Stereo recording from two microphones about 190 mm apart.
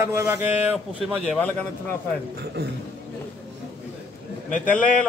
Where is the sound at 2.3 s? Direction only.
60° right (ahead or behind).